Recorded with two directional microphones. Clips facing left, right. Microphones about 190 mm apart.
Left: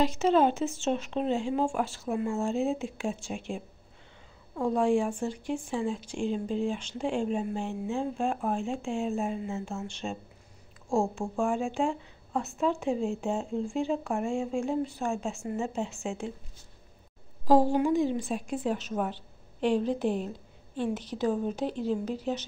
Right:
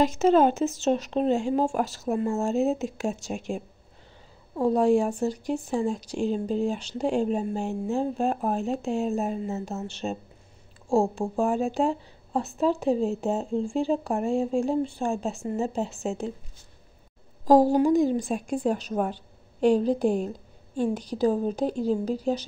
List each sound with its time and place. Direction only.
0.0 s a woman's voice: 45° right (ahead or behind)
17.5 s a woman's voice: 40° right (ahead or behind)